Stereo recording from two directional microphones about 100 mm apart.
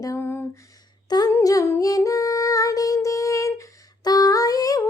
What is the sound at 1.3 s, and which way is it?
Music, 35° left (ahead or behind).